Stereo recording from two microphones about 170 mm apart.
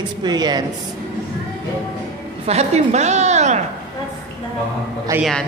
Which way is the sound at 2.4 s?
40° right (ahead or behind).